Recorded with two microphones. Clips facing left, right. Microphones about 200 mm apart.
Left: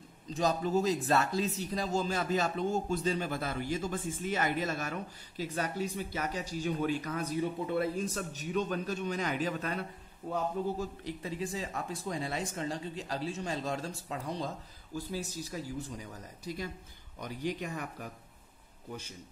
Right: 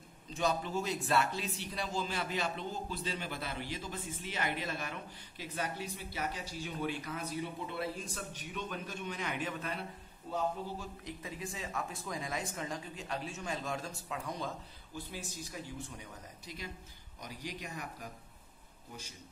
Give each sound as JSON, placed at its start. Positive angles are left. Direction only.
{"t": 0.3, "sound": "a man's voice", "side_deg": 40}
{"t": 17.2, "sound": "a man's voice", "side_deg": 55}